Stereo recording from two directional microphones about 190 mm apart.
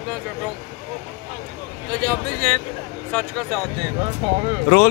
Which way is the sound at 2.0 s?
5° left (ahead or behind).